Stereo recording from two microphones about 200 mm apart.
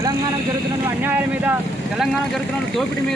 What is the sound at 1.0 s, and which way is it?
Speech, 10° right (ahead or behind).